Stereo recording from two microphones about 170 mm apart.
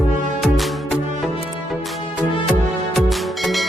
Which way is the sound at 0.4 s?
Centre (ahead or behind).